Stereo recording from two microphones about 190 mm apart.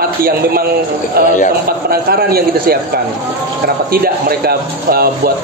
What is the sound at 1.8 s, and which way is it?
Speech, 55° right (ahead or behind).